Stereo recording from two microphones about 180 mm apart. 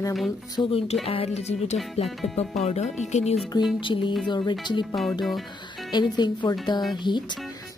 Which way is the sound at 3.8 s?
25° left (ahead or behind).